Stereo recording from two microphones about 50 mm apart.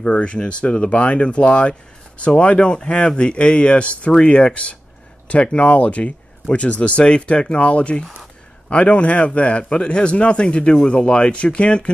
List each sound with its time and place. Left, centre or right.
0.0 s speech: left